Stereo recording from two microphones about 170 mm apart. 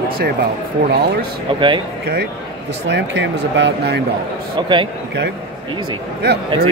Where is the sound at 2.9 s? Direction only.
90° right.